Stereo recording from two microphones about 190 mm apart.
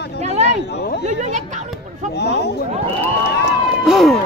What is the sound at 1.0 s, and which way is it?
Speech, 40° right (ahead or behind).